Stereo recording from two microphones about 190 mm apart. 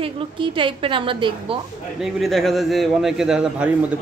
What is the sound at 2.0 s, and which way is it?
A man's voice, centre (ahead or behind).